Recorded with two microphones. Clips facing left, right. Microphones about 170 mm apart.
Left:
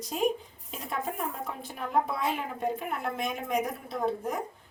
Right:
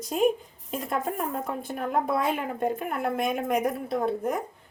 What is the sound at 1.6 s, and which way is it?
A woman's voice, 50° right (ahead or behind).